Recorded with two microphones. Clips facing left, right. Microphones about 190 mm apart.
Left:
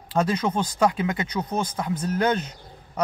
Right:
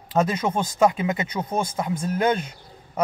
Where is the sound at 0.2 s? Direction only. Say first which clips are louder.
Right 1 dB; 5° right (ahead or behind).